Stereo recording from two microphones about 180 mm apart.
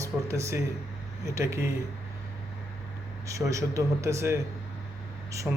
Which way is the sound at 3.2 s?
15° right (ahead or behind).